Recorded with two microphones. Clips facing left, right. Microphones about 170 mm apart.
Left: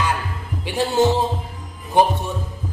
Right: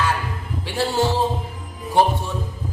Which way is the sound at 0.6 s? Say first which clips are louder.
Left 3 dB; 20° left (ahead or behind).